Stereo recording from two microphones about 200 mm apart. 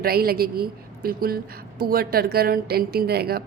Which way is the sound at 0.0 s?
50° right (ahead or behind).